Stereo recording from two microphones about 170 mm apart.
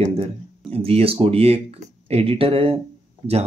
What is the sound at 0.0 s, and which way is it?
Speech, 35° right (ahead or behind).